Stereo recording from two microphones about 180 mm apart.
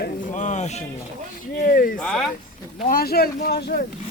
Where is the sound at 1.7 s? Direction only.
50° left (ahead or behind).